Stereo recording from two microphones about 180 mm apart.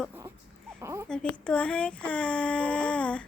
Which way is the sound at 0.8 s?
15° right (ahead or behind).